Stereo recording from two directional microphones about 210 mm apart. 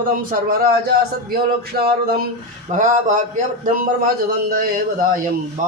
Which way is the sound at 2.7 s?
35° right (ahead or behind).